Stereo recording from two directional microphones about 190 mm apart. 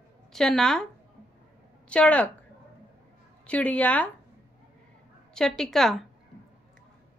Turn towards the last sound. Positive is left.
turn(degrees=0)  # may be behind; listen again after turning